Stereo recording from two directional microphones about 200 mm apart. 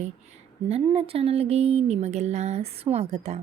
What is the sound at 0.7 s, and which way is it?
Speech, 30° right (ahead or behind).